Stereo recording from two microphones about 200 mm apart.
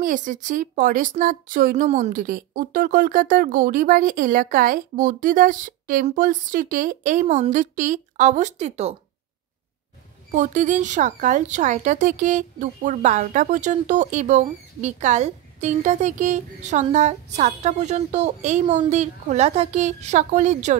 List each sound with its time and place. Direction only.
0.0 s a woman's voice: 40° right (ahead or behind)
10.3 s a woman's voice: 40° right (ahead or behind)